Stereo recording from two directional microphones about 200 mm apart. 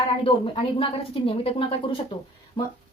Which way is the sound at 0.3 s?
25° left (ahead or behind).